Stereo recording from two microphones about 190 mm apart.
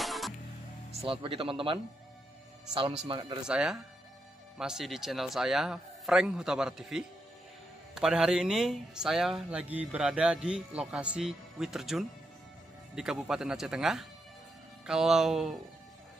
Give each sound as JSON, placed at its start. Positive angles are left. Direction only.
{"t": 0.0, "sound": "music", "side_deg": 0}
{"t": 0.9, "sound": "speech", "side_deg": -30}
{"t": 3.1, "sound": "speech", "side_deg": -25}
{"t": 3.4, "sound": "speech", "side_deg": -5}